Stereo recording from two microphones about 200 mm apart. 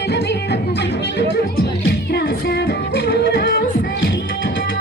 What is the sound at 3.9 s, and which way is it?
Music, 65° left (ahead or behind).